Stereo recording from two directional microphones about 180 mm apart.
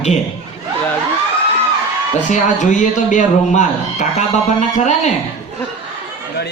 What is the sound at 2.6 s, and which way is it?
A man's voice, 40° left (ahead or behind).